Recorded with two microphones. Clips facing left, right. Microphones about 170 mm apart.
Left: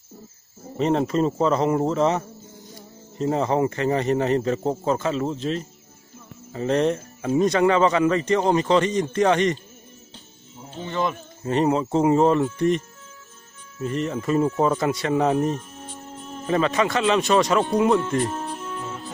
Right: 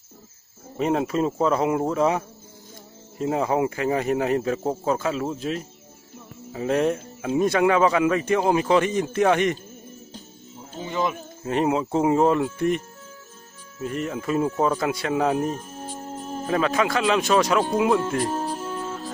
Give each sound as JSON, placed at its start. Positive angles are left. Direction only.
{"t": 0.7, "sound": "speech", "side_deg": -5}
{"t": 10.8, "sound": "speech", "side_deg": -5}
{"t": 13.8, "sound": "speech", "side_deg": -5}
{"t": 15.5, "sound": "music", "side_deg": -40}
{"t": 16.4, "sound": "speech", "side_deg": 0}
{"t": 18.3, "sound": "music", "side_deg": -35}